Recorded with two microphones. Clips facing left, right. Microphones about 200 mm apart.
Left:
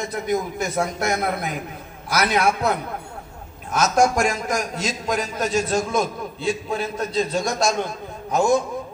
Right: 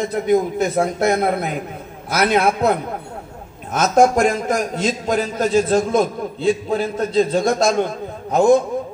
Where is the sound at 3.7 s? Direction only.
55° right (ahead or behind).